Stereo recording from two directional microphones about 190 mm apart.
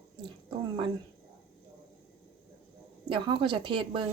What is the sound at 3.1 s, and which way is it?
Speech, 25° right (ahead or behind).